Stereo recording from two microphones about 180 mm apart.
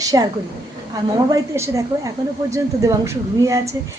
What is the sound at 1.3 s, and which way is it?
A woman's voice, 15° right (ahead or behind).